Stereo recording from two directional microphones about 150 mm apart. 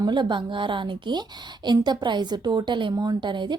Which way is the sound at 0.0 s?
30° right (ahead or behind).